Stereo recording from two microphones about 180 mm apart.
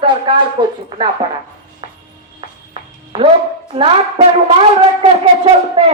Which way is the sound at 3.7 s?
35° right (ahead or behind).